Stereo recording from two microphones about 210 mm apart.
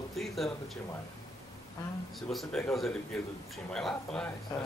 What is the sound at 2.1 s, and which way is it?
Speech, centre (ahead or behind).